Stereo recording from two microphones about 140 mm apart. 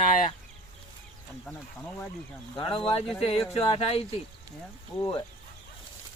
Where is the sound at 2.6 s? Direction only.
40° left (ahead or behind).